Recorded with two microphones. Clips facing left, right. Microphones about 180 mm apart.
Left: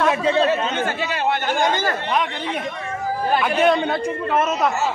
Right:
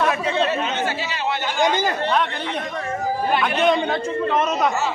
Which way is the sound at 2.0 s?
10° left (ahead or behind).